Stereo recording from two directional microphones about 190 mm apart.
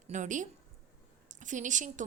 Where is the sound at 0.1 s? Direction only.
40° right (ahead or behind).